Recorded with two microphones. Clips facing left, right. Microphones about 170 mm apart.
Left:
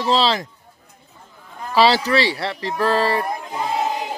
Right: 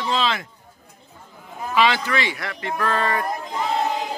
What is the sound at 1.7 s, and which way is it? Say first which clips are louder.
Speech: left 4 dB; 35° left (ahead or behind).